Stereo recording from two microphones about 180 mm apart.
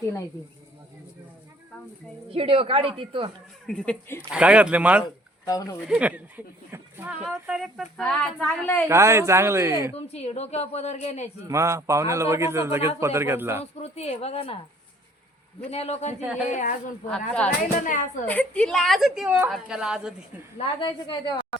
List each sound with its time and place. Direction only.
2.3 s a woman's voice: 30° right (ahead or behind)
3.7 s speech: 5° left (ahead or behind)
4.2 s a man's voice: 5° right (ahead or behind)
5.5 s a woman's voice: 20° left (ahead or behind)
5.8 s speech: 5° right (ahead or behind); by 8.9 s 10° left (ahead or behind)
8.9 s a man's voice: 15° right (ahead or behind)
9.9 s a woman's voice: 35° left (ahead or behind)
11.4 s a man's voice: 15° right (ahead or behind)
13.7 s a woman's voice: 35° left (ahead or behind)
15.7 s a woman's voice: 35° left (ahead or behind)
17.1 s speech: 5° left (ahead or behind)
17.7 s speech: 45° left (ahead or behind)
18.3 s speech: 5° left (ahead or behind)
20.6 s a woman's voice: 30° left (ahead or behind)